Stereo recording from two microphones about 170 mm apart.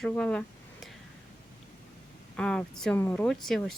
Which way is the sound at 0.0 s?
5° left (ahead or behind).